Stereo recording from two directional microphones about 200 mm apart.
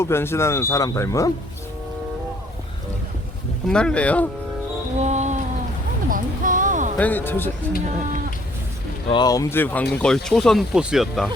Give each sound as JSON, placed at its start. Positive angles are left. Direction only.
{"t": 0.0, "sound": "speech", "side_deg": 10}
{"t": 3.7, "sound": "speech", "side_deg": 5}
{"t": 4.9, "sound": "music", "side_deg": -35}
{"t": 6.1, "sound": "a sound", "side_deg": -40}
{"t": 6.9, "sound": "speech", "side_deg": 10}
{"t": 9.0, "sound": "speech", "side_deg": 20}